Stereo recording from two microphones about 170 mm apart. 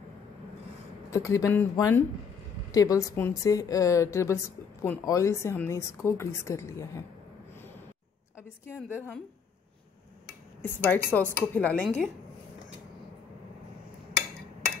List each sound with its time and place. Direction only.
1.1 s a woman's voice: 15° left (ahead or behind)
10.6 s speech: 10° left (ahead or behind)